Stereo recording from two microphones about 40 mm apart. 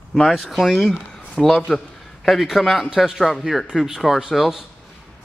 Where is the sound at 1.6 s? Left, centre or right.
Centre.